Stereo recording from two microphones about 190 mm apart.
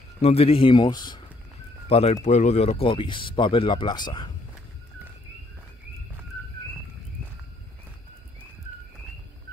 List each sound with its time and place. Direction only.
0.2 s speech: 35° left (ahead or behind)